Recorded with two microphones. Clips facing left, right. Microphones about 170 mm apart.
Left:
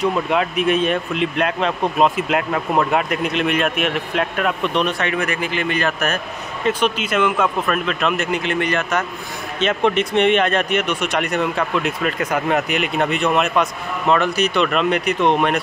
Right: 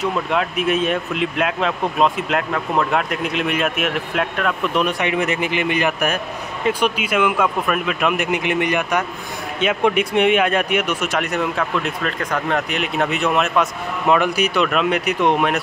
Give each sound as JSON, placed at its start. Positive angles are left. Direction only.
{"t": 0.0, "sound": "speech", "side_deg": 0}
{"t": 4.8, "sound": "speech", "side_deg": -15}